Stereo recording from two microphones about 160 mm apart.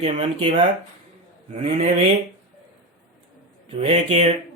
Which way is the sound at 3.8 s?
40° right (ahead or behind).